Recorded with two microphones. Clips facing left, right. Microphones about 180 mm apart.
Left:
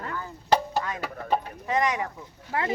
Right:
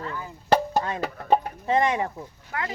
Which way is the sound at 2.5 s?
30° left (ahead or behind).